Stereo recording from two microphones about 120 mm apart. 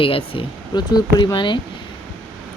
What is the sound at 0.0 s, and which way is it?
Speech, 50° left (ahead or behind).